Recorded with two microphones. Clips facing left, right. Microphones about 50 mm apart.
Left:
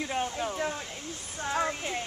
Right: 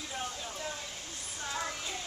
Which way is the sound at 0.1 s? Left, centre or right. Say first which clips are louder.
Left 6 dB; left.